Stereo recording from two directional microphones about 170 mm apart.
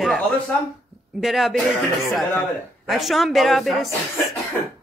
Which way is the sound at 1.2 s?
Centre (ahead or behind).